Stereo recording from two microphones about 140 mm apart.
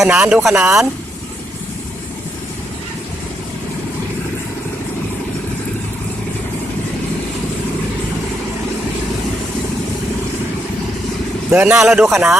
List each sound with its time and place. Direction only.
0.0 s speech: 5° right (ahead or behind)
11.5 s a man's voice: 15° right (ahead or behind)
11.8 s speech: centre (ahead or behind)